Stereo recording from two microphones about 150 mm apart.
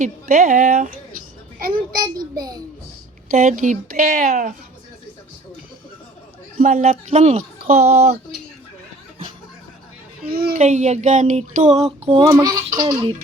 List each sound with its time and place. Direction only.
0.0 s speech: 70° right (ahead or behind)
1.5 s a child's voice: 75° right (ahead or behind)
3.3 s speech: 55° right (ahead or behind)
6.6 s speech: 65° right (ahead or behind)
7.2 s a sound: 50° right (ahead or behind)
10.2 s a child's voice: 85° right
10.5 s a sound: 50° right (ahead or behind); by 12.5 s 30° right (ahead or behind)
12.7 s music: 25° right (ahead or behind)